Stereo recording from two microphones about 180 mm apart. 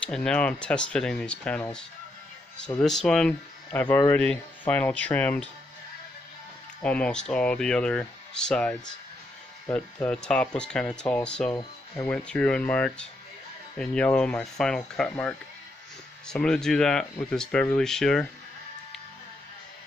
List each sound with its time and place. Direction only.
0.0 s speech: 5° left (ahead or behind)
6.8 s speech: 5° left (ahead or behind)